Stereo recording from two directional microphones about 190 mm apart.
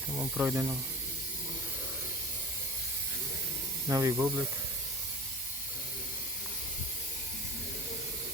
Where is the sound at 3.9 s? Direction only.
15° right (ahead or behind).